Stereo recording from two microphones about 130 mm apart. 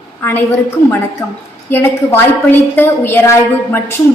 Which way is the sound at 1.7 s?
20° left (ahead or behind).